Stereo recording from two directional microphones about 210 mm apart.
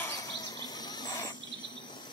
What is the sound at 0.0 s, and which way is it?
Bird, 15° left (ahead or behind).